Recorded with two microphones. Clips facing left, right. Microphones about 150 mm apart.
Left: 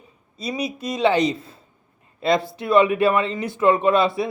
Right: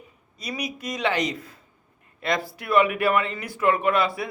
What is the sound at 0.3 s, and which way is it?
Speech, 25° left (ahead or behind).